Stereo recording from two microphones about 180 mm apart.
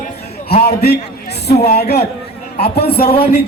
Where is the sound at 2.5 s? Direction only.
30° left (ahead or behind).